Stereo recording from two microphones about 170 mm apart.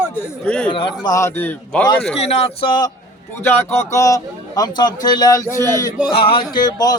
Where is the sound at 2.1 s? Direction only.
35° left (ahead or behind).